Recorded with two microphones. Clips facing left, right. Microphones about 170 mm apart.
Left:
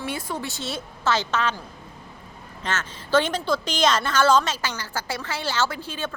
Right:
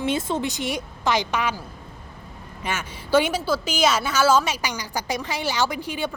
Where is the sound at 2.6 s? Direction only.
10° right (ahead or behind).